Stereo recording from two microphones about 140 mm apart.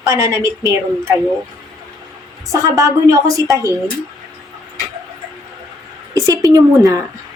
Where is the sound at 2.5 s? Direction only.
25° right (ahead or behind).